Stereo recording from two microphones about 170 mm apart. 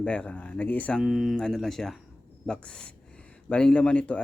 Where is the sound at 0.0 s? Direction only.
5° left (ahead or behind).